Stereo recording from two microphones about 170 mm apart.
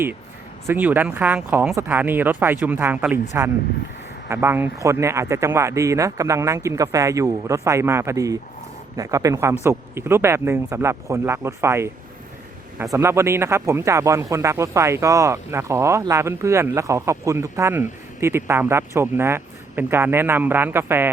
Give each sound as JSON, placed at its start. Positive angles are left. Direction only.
{"t": 0.7, "sound": "speech", "side_deg": -10}
{"t": 4.3, "sound": "speech", "side_deg": -15}